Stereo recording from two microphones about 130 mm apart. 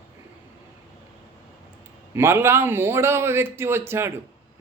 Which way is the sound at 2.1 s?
20° right (ahead or behind).